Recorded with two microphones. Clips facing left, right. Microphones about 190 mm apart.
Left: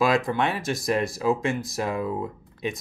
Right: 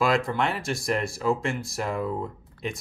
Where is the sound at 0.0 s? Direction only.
15° left (ahead or behind).